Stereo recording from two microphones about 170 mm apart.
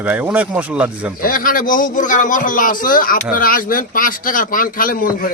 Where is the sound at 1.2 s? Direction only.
55° left (ahead or behind).